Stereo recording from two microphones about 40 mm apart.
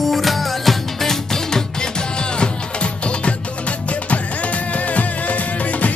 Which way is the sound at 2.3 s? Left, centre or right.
Left.